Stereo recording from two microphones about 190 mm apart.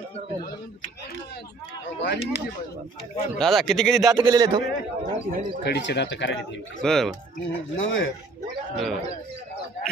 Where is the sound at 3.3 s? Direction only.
Centre (ahead or behind).